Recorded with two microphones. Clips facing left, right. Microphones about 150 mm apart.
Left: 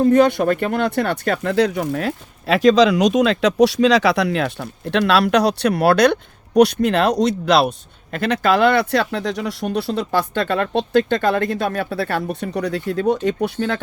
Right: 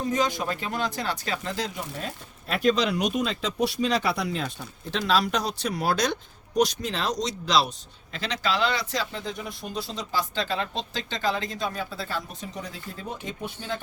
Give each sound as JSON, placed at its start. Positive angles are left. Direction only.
{"t": 0.0, "sound": "speech", "side_deg": 60}